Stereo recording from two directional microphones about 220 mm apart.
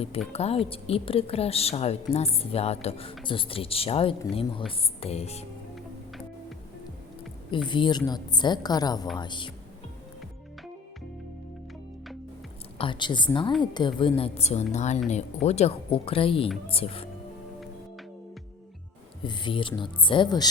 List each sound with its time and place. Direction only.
0.3 s a woman's voice: 30° left (ahead or behind)
7.5 s a woman's voice: 20° left (ahead or behind)
12.8 s a woman's voice: 20° left (ahead or behind)
19.2 s a woman's voice: 20° left (ahead or behind)